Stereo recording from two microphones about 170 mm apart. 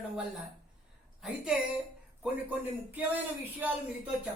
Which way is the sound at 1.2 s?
Centre (ahead or behind).